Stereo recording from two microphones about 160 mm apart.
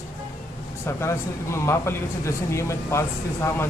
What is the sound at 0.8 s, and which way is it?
A man's voice, 15° left (ahead or behind).